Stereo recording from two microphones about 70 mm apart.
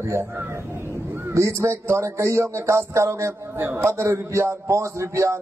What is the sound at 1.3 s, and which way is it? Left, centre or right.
A man's voice, right.